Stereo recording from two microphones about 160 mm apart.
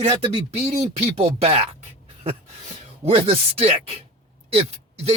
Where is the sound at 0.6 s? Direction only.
45° right (ahead or behind).